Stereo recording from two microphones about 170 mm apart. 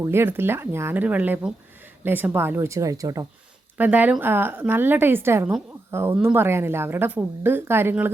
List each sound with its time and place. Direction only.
0.0 s a woman's voice: 15° right (ahead or behind)
3.8 s a woman's voice: 10° right (ahead or behind)